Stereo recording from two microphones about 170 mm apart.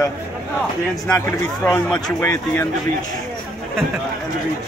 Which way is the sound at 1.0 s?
15° left (ahead or behind).